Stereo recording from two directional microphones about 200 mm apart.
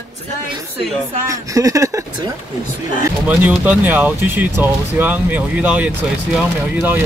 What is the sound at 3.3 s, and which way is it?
Speech, 5° right (ahead or behind).